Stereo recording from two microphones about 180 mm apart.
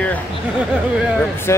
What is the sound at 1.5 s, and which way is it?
Speech, 15° left (ahead or behind).